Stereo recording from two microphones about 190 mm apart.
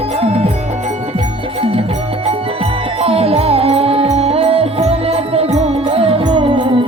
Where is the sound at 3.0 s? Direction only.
30° right (ahead or behind).